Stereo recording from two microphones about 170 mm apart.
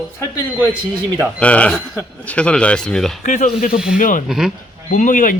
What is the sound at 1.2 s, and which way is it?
Speech, 5° left (ahead or behind).